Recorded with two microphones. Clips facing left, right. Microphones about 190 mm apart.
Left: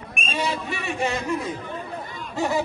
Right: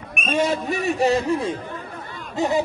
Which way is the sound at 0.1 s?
55° right (ahead or behind).